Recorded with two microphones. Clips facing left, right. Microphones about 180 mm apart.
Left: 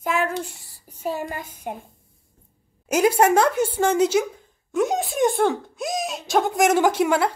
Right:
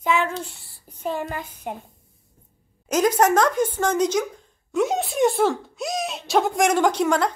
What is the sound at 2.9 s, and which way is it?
A woman's voice, 10° left (ahead or behind).